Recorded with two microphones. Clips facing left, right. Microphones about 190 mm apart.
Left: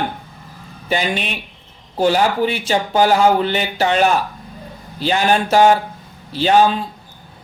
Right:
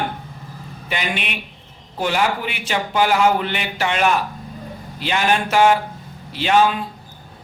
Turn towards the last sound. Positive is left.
turn(degrees=35)  # may be behind; listen again after turning